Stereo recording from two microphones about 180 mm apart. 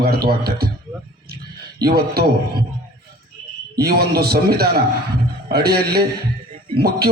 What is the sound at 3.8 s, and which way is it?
A man's voice, 60° right (ahead or behind).